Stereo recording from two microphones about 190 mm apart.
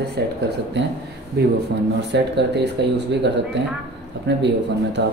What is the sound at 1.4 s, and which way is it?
Speech, 60° right (ahead or behind).